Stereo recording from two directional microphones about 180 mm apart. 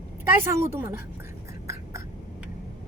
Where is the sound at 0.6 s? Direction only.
15° right (ahead or behind).